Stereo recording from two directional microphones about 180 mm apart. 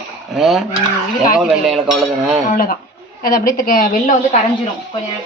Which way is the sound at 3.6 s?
50° left (ahead or behind).